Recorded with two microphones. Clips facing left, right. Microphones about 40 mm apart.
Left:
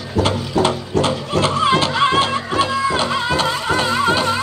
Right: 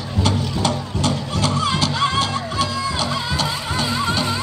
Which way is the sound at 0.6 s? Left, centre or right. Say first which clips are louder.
Left 6 dB; left.